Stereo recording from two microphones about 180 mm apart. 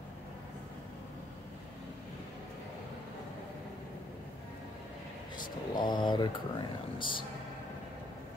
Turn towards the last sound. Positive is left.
turn(degrees=25)  # may be behind; listen again after turning